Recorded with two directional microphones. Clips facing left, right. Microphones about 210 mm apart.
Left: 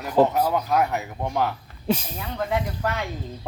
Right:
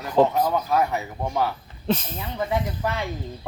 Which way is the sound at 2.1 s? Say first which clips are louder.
Even; 5° right (ahead or behind).